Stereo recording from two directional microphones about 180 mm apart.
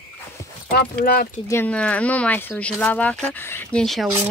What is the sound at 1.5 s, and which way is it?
Speech, 10° left (ahead or behind).